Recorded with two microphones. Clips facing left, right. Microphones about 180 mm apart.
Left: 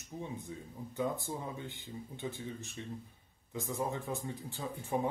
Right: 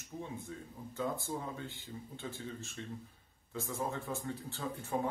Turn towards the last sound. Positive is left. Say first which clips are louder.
# left 1 dB
turn(degrees=15)  # may be behind; listen again after turning